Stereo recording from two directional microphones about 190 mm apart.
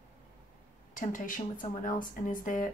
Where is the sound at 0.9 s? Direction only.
45° left (ahead or behind).